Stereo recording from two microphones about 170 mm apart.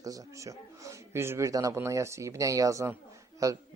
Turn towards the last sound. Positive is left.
turn(degrees=-20)  # may be behind; listen again after turning